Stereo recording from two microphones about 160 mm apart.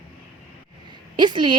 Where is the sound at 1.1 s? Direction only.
30° right (ahead or behind).